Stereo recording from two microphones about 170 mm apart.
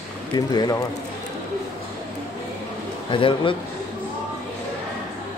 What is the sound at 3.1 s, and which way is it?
Speech, 30° left (ahead or behind).